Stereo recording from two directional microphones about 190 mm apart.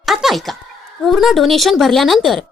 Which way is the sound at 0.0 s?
Centre (ahead or behind).